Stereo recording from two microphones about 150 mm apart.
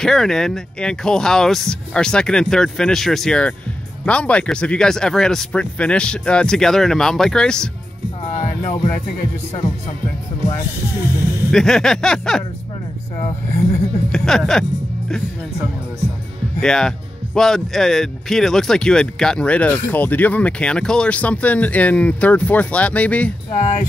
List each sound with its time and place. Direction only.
0.0 s speech: 5° left (ahead or behind)
8.3 s music: 50° left (ahead or behind)
11.5 s speech: 5° left (ahead or behind)
14.1 s speech: 5° left (ahead or behind)
16.5 s speech: 5° left (ahead or behind)
23.5 s speech: 50° left (ahead or behind)